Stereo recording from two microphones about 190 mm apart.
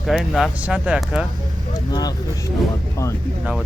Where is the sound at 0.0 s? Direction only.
Centre (ahead or behind).